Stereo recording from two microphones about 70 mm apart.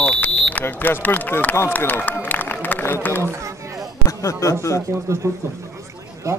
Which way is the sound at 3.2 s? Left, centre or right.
Right.